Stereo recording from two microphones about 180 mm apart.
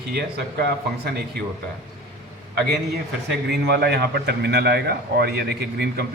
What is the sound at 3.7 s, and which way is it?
A man's voice, 65° right (ahead or behind).